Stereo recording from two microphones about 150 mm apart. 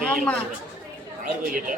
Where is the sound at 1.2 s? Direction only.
65° right (ahead or behind).